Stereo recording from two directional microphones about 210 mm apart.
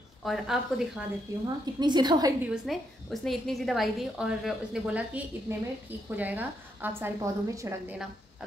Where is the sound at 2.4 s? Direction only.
Centre (ahead or behind).